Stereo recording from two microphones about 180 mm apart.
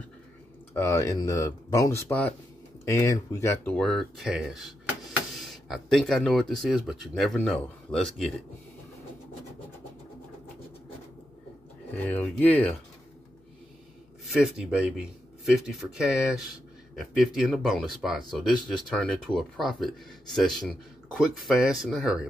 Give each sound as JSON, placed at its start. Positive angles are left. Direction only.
{"t": 0.7, "sound": "speech", "side_deg": 15}
{"t": 11.9, "sound": "speech", "side_deg": 5}
{"t": 14.2, "sound": "speech", "side_deg": 0}